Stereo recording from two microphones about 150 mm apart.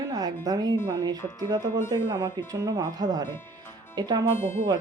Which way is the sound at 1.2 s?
15° left (ahead or behind).